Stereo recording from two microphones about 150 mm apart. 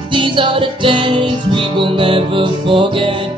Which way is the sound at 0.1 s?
35° right (ahead or behind).